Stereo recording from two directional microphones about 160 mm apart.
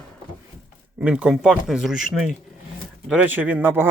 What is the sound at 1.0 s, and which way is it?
Speech, 5° right (ahead or behind).